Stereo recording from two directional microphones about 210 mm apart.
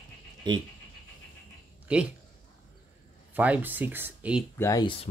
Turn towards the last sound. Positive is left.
turn(degrees=20)  # may be behind; listen again after turning